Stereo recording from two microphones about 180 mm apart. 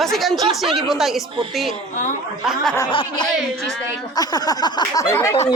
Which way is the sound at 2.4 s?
Centre (ahead or behind).